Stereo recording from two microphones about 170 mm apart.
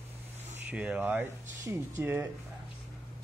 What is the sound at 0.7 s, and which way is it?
Speech, 5° right (ahead or behind).